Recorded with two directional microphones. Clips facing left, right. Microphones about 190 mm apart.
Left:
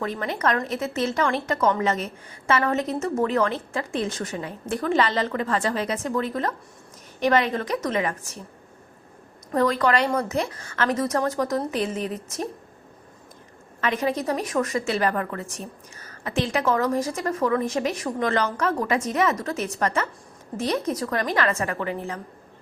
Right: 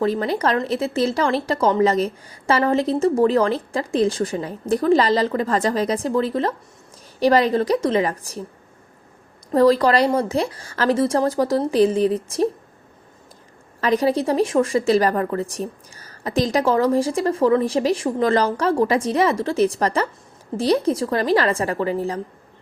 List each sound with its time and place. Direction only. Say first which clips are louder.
0.0 s a woman's voice: right 6 dB; 35° right (ahead or behind)
9.5 s a woman's voice: right 6 dB; 35° right (ahead or behind)
13.8 s a woman's voice: right 6 dB; 35° right (ahead or behind)